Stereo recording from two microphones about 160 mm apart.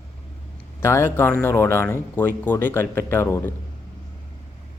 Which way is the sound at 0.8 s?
15° left (ahead or behind).